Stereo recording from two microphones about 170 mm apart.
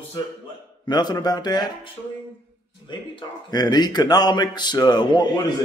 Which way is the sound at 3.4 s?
25° left (ahead or behind).